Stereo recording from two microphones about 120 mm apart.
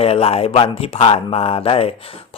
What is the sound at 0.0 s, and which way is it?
A man's voice, 55° left (ahead or behind).